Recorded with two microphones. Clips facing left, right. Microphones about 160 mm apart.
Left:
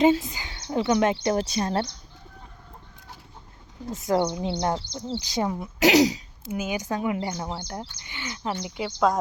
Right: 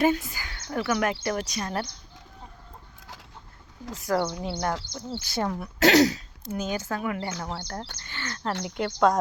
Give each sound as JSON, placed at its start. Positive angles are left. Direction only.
{"t": 0.0, "sound": "speech", "side_deg": 20}
{"t": 4.0, "sound": "speech", "side_deg": 20}
{"t": 8.6, "sound": "speech", "side_deg": 0}